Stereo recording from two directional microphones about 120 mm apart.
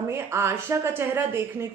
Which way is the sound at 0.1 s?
20° right (ahead or behind).